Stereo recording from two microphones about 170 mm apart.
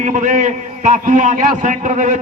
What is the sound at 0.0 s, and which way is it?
A man's voice, 50° right (ahead or behind).